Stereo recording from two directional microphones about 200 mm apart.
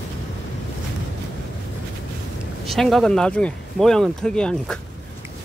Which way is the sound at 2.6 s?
Centre (ahead or behind).